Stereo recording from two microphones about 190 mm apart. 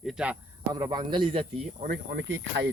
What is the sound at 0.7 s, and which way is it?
Speech, 20° right (ahead or behind).